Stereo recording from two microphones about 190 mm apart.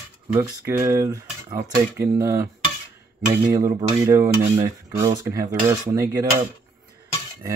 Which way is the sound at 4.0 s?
15° right (ahead or behind).